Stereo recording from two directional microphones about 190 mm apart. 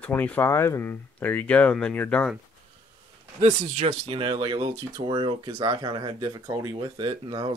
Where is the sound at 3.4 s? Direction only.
30° right (ahead or behind).